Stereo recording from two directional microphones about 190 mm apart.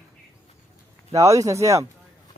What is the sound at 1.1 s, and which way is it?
Speech, 15° right (ahead or behind).